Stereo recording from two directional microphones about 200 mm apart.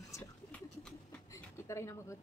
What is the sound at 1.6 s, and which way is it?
Speech, 15° left (ahead or behind).